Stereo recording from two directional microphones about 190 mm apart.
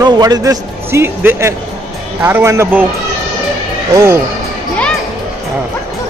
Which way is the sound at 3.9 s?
15° right (ahead or behind).